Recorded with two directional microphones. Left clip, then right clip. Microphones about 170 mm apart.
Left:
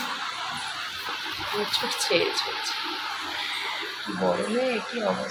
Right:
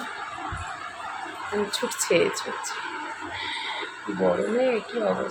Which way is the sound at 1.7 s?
50° right (ahead or behind).